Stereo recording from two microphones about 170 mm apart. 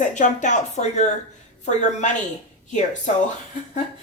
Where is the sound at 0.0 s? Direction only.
45° left (ahead or behind).